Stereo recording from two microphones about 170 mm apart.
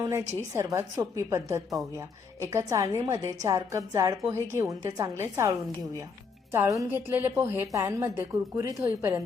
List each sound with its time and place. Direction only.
0.0 s a woman's voice: 15° right (ahead or behind)